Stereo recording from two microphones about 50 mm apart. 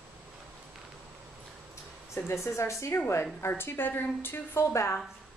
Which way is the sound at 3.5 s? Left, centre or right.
Left.